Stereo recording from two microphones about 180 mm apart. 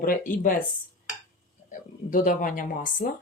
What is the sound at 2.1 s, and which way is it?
Speech, 50° left (ahead or behind).